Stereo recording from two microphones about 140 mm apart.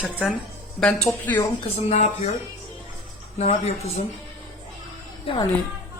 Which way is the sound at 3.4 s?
50° left (ahead or behind).